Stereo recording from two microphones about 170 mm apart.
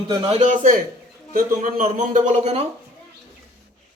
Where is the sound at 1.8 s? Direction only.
45° right (ahead or behind).